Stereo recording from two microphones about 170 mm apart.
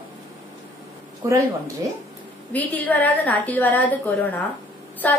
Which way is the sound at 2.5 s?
10° left (ahead or behind).